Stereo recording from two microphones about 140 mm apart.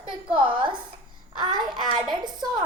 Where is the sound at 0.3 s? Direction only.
35° right (ahead or behind).